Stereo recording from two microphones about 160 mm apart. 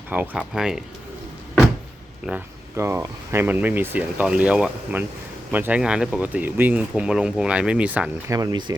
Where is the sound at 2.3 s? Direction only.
15° right (ahead or behind).